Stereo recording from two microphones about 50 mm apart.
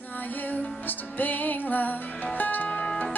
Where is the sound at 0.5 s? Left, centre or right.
Left.